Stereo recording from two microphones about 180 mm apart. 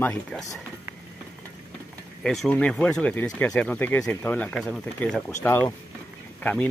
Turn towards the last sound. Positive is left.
turn(degrees=10)  # may be behind; listen again after turning